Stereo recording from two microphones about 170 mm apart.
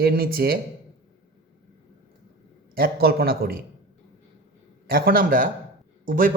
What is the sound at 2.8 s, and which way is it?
Speech, 65° right (ahead or behind).